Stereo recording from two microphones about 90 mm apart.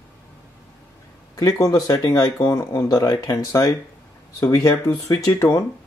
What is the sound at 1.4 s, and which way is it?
Speech, 40° left (ahead or behind).